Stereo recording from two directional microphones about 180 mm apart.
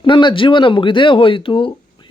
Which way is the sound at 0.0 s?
25° left (ahead or behind).